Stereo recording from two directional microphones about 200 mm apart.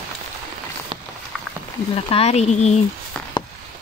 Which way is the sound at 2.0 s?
30° left (ahead or behind).